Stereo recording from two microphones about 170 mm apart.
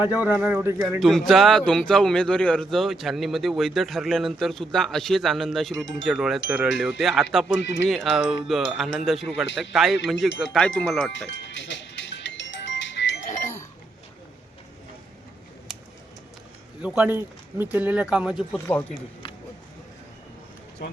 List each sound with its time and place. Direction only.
0.1 s speech: 5° right (ahead or behind)
0.8 s speech: centre (ahead or behind)
7.6 s speech: 90° left
7.9 s speech: centre (ahead or behind)
11.3 s music: 90° left
16.8 s speech: 10° right (ahead or behind)
18.5 s speech: 10° left (ahead or behind)